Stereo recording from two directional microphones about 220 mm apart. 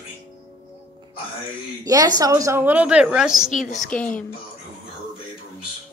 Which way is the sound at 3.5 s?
35° left (ahead or behind).